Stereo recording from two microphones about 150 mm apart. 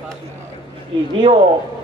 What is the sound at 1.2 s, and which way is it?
Speech, 40° right (ahead or behind).